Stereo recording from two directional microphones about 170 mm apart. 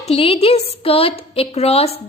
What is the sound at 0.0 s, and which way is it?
A woman's voice, 35° left (ahead or behind).